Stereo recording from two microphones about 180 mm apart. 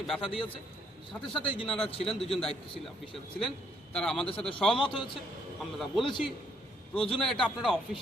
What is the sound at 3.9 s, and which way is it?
A man's voice, 5° left (ahead or behind).